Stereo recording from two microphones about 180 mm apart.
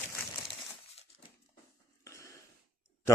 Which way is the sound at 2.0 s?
15° left (ahead or behind).